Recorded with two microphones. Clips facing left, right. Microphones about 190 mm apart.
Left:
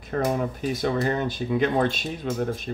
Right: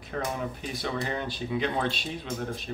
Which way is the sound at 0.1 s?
45° left (ahead or behind).